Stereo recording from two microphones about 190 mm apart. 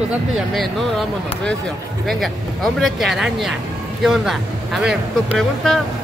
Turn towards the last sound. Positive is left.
turn(degrees=0)  # may be behind; listen again after turning